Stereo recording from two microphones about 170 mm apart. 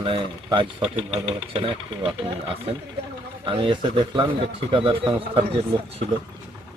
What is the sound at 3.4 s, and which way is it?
Speech, 30° right (ahead or behind).